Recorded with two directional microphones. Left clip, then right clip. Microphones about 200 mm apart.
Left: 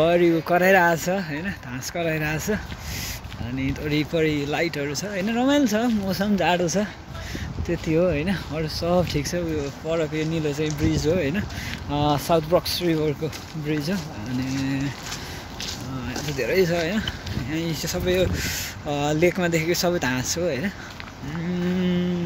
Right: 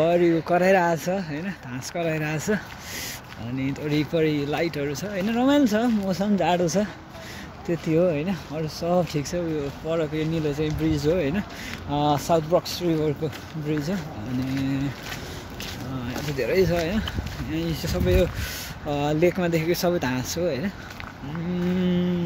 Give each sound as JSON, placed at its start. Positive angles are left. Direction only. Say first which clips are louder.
{"t": 0.0, "sound": "speech", "louder": "left 1 dB", "side_deg": 0}
{"t": 16.1, "sound": "speech", "louder": "left 1 dB", "side_deg": -5}
{"t": 21.7, "sound": "speech", "louder": "right 1 dB", "side_deg": -5}